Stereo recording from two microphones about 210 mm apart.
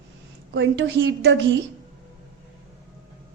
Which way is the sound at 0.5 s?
60° right (ahead or behind).